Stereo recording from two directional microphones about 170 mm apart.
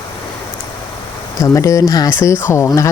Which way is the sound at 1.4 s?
20° left (ahead or behind).